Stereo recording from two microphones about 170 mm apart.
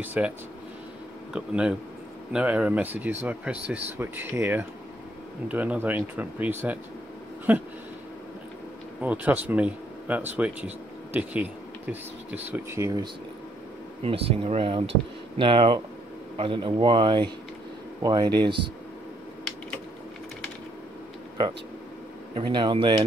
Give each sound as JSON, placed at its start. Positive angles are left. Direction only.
{"t": 0.0, "sound": "speech", "side_deg": -10}
{"t": 1.3, "sound": "speech", "side_deg": -5}
{"t": 9.0, "sound": "speech", "side_deg": -10}
{"t": 14.0, "sound": "speech", "side_deg": -35}
{"t": 22.3, "sound": "speech", "side_deg": -30}